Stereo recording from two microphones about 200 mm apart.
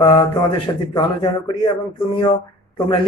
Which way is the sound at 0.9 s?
20° left (ahead or behind).